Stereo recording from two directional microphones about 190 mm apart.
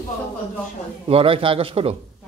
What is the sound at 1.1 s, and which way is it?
Speech, 30° right (ahead or behind).